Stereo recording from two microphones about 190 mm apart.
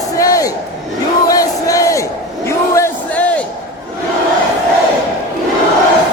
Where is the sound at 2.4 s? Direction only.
15° left (ahead or behind).